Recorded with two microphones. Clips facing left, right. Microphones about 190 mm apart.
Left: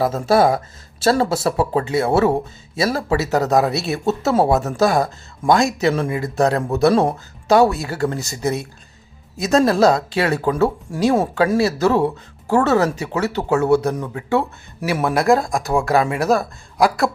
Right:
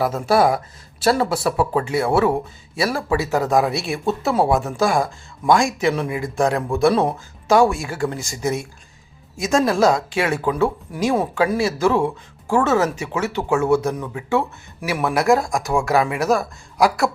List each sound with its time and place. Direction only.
0.0 s speech: 25° left (ahead or behind)
2.9 s speech: 40° left (ahead or behind)
15.3 s speech: 15° right (ahead or behind)
15.6 s speech: 35° left (ahead or behind)